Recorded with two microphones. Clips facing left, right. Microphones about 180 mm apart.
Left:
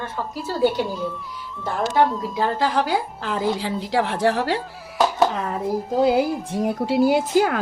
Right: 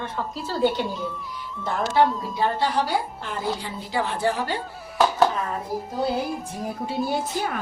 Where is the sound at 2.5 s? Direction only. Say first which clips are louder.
Left 2 dB; 90° left.